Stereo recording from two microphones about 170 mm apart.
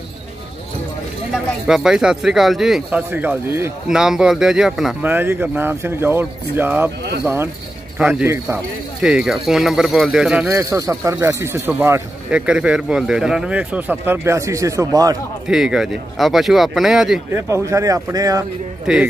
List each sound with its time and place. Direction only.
1.3 s speech: centre (ahead or behind)
8.0 s speech: 10° right (ahead or behind)
9.0 s speech: centre (ahead or behind)
10.4 s speech: 15° right (ahead or behind)
15.4 s speech: 5° right (ahead or behind)
17.3 s speech: 15° right (ahead or behind)
18.9 s speech: 5° right (ahead or behind)